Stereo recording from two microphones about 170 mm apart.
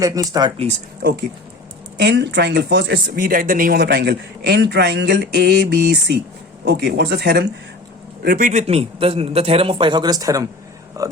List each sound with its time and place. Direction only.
0.0 s speech: 20° right (ahead or behind)
0.5 s a man's voice: 35° right (ahead or behind)
2.0 s speech: 90° right
8.2 s a man's voice: 60° right (ahead or behind)
8.6 s a man's voice: 35° right (ahead or behind); by 11.1 s 20° right (ahead or behind)